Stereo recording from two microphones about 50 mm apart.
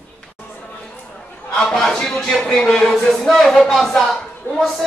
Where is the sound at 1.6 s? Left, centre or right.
Centre.